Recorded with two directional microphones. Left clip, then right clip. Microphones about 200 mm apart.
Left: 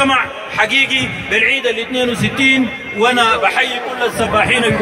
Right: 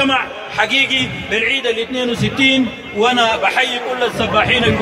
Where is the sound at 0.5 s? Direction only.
25° left (ahead or behind).